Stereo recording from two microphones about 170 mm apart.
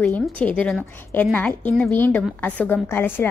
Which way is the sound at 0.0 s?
5° left (ahead or behind).